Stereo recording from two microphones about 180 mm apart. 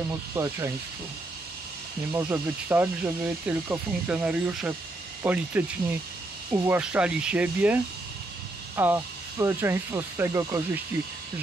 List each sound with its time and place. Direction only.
0.4 s speech: 15° right (ahead or behind)
2.1 s speech: 10° right (ahead or behind)